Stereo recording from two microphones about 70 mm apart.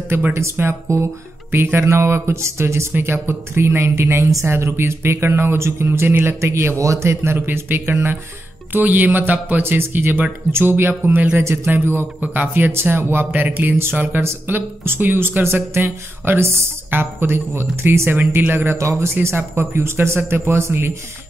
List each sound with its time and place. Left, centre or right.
0.1 s speech: right
18.8 s speech: right